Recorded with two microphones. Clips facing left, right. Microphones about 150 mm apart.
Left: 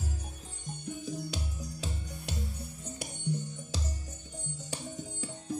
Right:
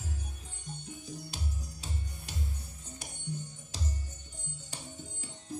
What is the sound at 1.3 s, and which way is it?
Music, 75° left (ahead or behind).